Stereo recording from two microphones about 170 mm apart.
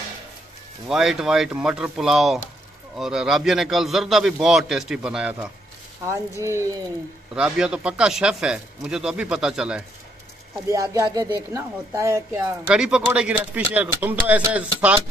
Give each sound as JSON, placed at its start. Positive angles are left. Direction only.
{"t": 0.8, "sound": "speech", "side_deg": -5}
{"t": 6.0, "sound": "speech", "side_deg": -15}
{"t": 7.3, "sound": "speech", "side_deg": -5}
{"t": 10.7, "sound": "speech", "side_deg": -20}
{"t": 12.7, "sound": "speech", "side_deg": -5}